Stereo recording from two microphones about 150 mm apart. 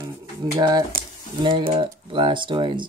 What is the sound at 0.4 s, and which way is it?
Speech, 25° right (ahead or behind).